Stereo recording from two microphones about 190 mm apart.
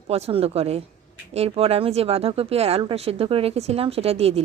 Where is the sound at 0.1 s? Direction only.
30° right (ahead or behind).